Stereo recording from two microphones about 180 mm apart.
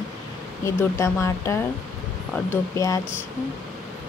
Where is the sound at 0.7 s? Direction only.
15° left (ahead or behind).